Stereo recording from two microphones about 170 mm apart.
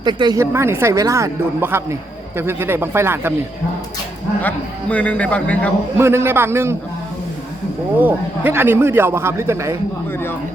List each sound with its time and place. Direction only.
0.0 s a woman's voice: 25° right (ahead or behind)
0.3 s speech: 15° right (ahead or behind)
4.4 s a man's voice: 10° left (ahead or behind)
6.0 s speech: 15° right (ahead or behind)
7.9 s speech: 10° right (ahead or behind)